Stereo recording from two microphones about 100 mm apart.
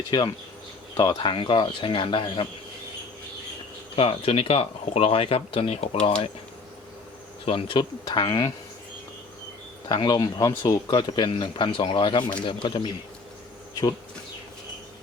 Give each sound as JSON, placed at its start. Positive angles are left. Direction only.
{"t": 0.1, "sound": "speech", "side_deg": 45}
{"t": 3.9, "sound": "speech", "side_deg": 70}
{"t": 7.4, "sound": "speech", "side_deg": 60}
{"t": 9.9, "sound": "speech", "side_deg": 50}